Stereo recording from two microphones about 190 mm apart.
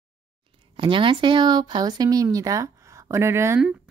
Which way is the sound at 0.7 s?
25° right (ahead or behind).